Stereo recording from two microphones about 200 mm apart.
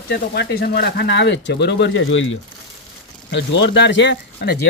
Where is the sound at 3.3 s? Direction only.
60° left (ahead or behind).